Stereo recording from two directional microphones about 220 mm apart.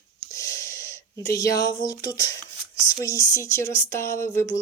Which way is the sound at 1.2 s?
15° left (ahead or behind).